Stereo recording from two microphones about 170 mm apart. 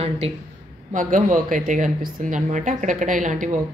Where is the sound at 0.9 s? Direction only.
50° right (ahead or behind).